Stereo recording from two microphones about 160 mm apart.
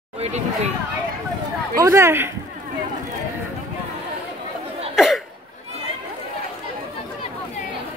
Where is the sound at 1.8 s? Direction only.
15° right (ahead or behind).